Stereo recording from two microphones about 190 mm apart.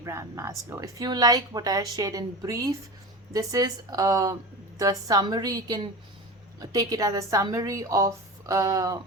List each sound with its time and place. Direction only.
0.0 s a woman's voice: 15° right (ahead or behind)